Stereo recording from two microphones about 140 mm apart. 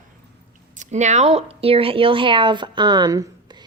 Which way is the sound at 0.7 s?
60° right (ahead or behind).